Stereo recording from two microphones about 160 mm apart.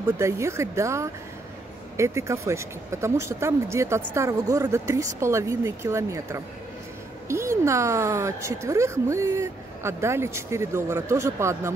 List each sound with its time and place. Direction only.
0.2 s speech: 20° right (ahead or behind)